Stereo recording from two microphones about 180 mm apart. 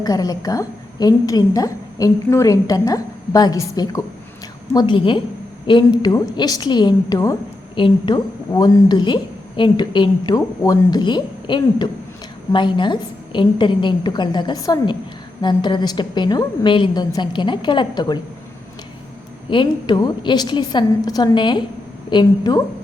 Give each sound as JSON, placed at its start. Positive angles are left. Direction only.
{"t": 0.0, "sound": "a woman's voice", "side_deg": 20}
{"t": 19.5, "sound": "a woman's voice", "side_deg": 25}